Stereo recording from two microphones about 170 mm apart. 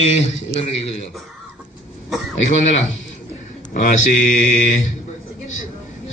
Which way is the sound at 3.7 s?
50° left (ahead or behind).